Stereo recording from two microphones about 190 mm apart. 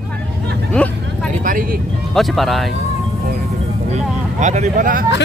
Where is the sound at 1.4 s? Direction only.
45° right (ahead or behind).